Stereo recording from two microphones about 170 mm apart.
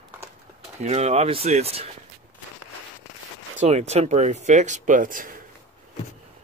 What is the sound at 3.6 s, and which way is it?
Speech, 40° right (ahead or behind).